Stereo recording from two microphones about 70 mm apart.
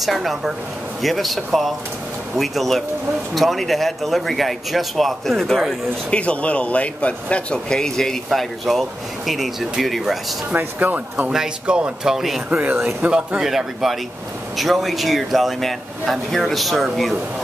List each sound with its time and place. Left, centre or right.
0.0 s speech: centre
6.0 s speech: centre
10.5 s speech: right
11.3 s speech: centre
13.0 s speech: centre
13.4 s speech: centre